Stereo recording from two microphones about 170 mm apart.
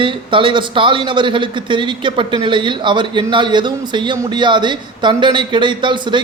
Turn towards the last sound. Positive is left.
turn(degrees=-25)  # may be behind; listen again after turning